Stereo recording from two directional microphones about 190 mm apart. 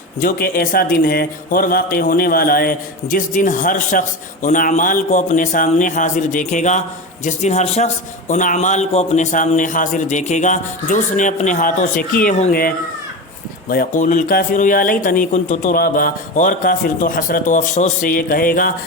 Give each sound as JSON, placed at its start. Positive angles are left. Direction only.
{"t": 0.2, "sound": "a man's voice", "side_deg": 50}